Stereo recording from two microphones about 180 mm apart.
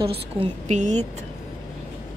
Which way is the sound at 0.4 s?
40° right (ahead or behind).